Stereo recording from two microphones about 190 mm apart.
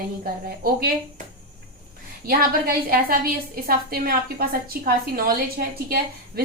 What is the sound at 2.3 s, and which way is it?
A woman's voice, 50° right (ahead or behind).